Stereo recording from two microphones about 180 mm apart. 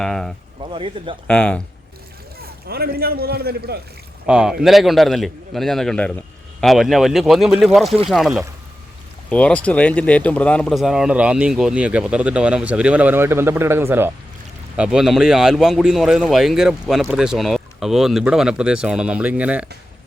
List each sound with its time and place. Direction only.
0.0 s speech: centre (ahead or behind)
0.6 s speech: 30° right (ahead or behind)
1.3 s speech: 5° left (ahead or behind)
2.6 s a man's voice: 60° right (ahead or behind)
4.3 s speech: 5° right (ahead or behind)
7.9 s speech: 35° right (ahead or behind)
8.1 s speech: centre (ahead or behind)